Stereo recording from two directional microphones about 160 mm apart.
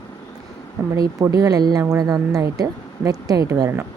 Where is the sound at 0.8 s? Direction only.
15° right (ahead or behind).